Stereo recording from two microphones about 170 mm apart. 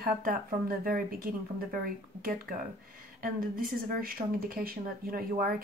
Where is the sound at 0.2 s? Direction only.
55° right (ahead or behind).